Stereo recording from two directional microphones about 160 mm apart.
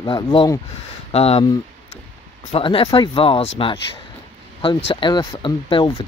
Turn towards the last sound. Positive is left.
turn(degrees=30)  # may be behind; listen again after turning